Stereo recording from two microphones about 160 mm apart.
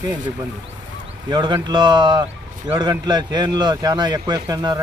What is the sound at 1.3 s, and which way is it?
A man's voice, 25° right (ahead or behind).